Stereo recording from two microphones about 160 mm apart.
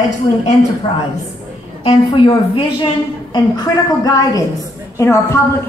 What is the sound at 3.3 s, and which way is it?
A woman's voice, 25° left (ahead or behind).